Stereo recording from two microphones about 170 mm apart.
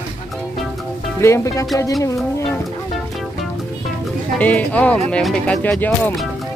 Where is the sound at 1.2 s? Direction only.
15° left (ahead or behind).